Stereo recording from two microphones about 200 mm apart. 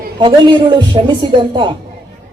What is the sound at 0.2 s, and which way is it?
A woman's voice, 25° right (ahead or behind).